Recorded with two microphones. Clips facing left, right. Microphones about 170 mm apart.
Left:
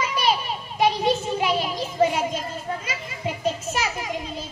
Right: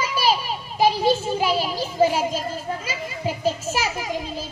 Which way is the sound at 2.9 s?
30° right (ahead or behind).